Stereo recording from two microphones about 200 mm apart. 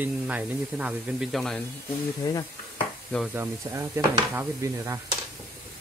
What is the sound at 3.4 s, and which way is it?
Speech, 10° right (ahead or behind).